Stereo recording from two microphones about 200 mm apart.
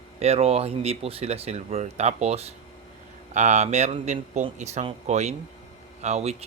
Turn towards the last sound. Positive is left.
turn(degrees=-30)  # may be behind; listen again after turning